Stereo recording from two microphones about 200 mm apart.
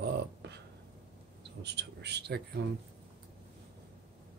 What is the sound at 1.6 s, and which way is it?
A man's voice, 60° right (ahead or behind).